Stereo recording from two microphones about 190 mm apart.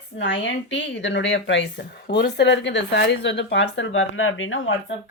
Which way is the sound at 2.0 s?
55° left (ahead or behind).